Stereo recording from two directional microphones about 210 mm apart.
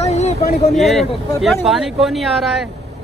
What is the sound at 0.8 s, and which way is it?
Speech, centre (ahead or behind).